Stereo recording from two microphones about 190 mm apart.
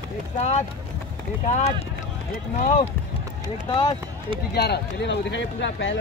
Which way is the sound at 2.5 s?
40° left (ahead or behind).